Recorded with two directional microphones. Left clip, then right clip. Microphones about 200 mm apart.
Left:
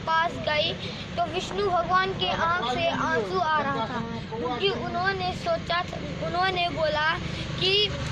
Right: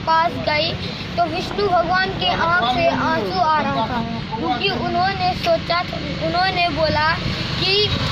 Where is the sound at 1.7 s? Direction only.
25° left (ahead or behind).